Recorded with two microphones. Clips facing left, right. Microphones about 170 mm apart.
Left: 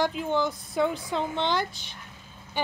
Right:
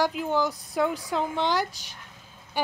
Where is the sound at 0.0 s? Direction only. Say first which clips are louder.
Right 1 dB; 5° right (ahead or behind).